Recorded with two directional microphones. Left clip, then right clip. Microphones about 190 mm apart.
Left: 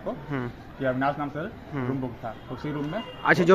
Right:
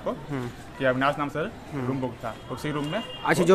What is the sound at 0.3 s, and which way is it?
Speech, 10° right (ahead or behind).